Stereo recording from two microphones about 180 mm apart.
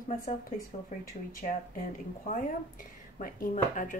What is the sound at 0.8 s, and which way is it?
A woman's voice, 50° left (ahead or behind).